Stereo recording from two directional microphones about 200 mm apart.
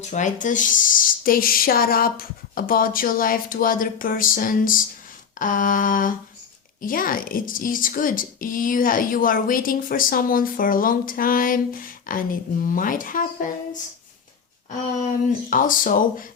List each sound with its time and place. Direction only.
0.1 s speech: 40° left (ahead or behind)
15.4 s speech: 40° left (ahead or behind)